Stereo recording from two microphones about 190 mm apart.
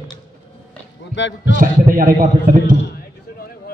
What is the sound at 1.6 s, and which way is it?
A man's voice, 50° right (ahead or behind).